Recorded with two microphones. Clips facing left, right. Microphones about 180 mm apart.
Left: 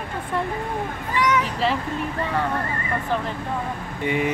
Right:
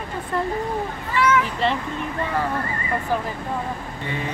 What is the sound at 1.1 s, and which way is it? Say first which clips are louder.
Vehicle: right 2 dB; 15° left (ahead or behind).